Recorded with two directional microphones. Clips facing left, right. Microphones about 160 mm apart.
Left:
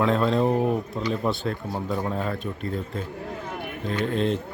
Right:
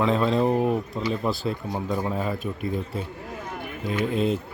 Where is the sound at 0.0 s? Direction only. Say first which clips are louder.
Even; centre (ahead or behind).